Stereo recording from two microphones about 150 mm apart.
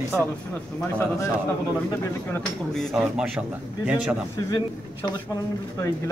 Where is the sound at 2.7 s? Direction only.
Centre (ahead or behind).